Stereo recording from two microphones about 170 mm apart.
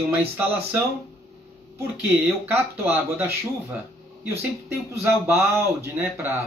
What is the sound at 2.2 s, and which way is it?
Speech, 10° right (ahead or behind).